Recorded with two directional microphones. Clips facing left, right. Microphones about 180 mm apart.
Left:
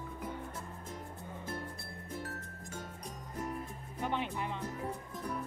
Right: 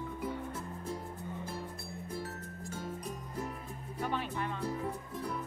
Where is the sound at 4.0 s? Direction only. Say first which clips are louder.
Even; 20° left (ahead or behind).